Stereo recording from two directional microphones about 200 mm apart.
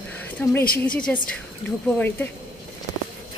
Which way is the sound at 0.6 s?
45° left (ahead or behind).